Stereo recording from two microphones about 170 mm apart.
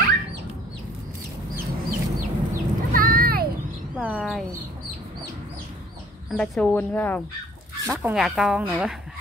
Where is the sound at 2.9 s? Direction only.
55° right (ahead or behind).